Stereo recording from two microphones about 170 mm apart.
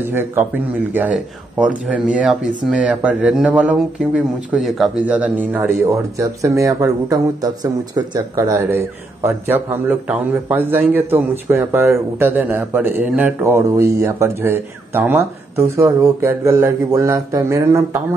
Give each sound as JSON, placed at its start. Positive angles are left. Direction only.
{"t": 0.0, "sound": "speech", "side_deg": -15}
{"t": 5.9, "sound": "speech", "side_deg": -20}